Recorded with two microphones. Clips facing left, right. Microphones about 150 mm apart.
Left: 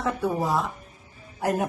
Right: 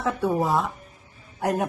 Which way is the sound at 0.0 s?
Centre (ahead or behind).